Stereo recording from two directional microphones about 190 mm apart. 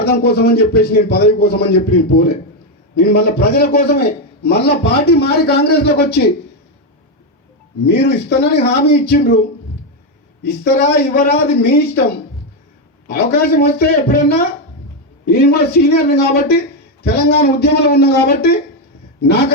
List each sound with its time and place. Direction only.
0.0 s a man's voice: 55° left (ahead or behind)
7.9 s a man's voice: 60° left (ahead or behind)
10.8 s a man's voice: 55° left (ahead or behind)
13.1 s a man's voice: 55° left (ahead or behind)